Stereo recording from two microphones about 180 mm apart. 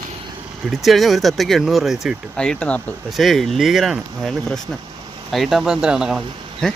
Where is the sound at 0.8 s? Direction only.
Centre (ahead or behind).